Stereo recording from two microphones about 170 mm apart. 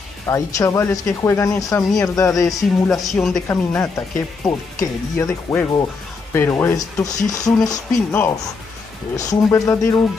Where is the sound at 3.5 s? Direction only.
10° left (ahead or behind).